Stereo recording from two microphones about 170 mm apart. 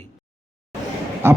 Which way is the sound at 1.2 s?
15° right (ahead or behind).